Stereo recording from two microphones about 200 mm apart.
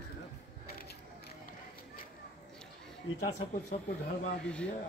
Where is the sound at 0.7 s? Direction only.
50° left (ahead or behind).